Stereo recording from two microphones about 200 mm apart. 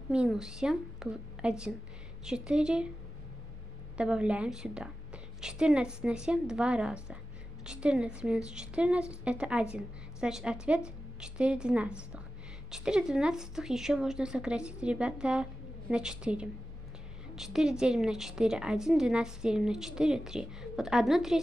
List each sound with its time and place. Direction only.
0.1 s a woman's voice: 5° right (ahead or behind)
3.9 s a woman's voice: 5° right (ahead or behind)